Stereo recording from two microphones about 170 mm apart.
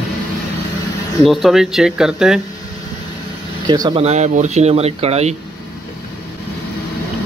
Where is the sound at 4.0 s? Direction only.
40° right (ahead or behind).